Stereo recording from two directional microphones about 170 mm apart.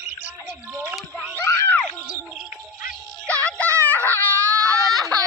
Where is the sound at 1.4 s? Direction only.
15° left (ahead or behind).